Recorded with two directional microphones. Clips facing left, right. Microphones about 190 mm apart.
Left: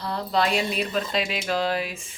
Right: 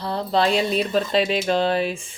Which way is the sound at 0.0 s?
30° right (ahead or behind).